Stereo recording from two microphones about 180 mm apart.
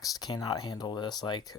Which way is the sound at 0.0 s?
20° left (ahead or behind).